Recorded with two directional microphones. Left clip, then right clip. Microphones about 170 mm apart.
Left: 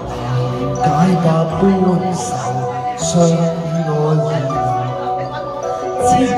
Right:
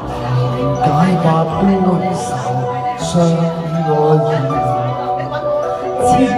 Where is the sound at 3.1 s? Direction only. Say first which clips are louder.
Left 2 dB; 30° left (ahead or behind).